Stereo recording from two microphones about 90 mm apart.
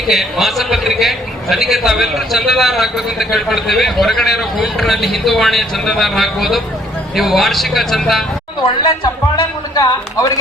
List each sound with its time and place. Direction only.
0.1 s a man's voice: centre (ahead or behind)
8.6 s a man's voice: 90° left
9.7 s a man's voice: 40° left (ahead or behind)